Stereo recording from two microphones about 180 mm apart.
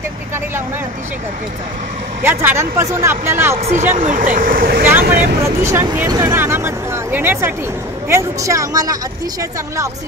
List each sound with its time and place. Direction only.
2.2 s speech: 15° right (ahead or behind)
3.9 s speech: 45° right (ahead or behind)
5.6 s speech: 15° right (ahead or behind)